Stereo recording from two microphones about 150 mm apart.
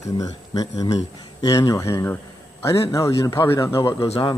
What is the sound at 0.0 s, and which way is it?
Speech, 25° left (ahead or behind).